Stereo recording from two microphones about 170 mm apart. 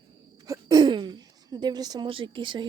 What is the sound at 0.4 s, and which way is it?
A woman's voice, 20° right (ahead or behind).